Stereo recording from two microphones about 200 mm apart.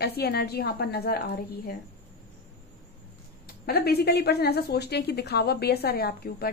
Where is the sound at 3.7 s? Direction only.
50° left (ahead or behind).